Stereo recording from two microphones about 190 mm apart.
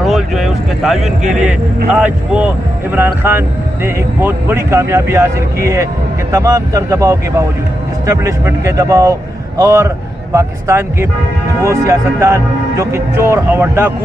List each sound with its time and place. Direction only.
0.0 s speech: centre (ahead or behind)